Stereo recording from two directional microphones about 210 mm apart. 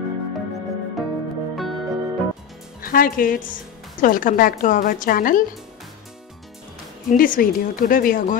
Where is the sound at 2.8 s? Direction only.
45° left (ahead or behind).